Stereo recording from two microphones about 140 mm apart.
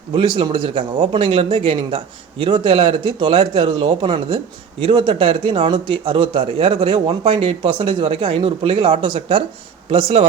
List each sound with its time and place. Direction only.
0.1 s speech: 35° right (ahead or behind)